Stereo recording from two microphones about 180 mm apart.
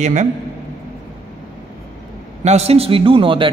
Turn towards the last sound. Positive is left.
turn(degrees=-30)  # may be behind; listen again after turning